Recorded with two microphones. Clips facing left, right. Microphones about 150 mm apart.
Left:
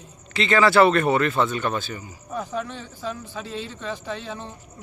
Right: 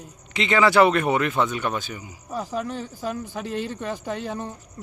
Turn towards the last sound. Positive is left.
turn(degrees=-45)  # may be behind; listen again after turning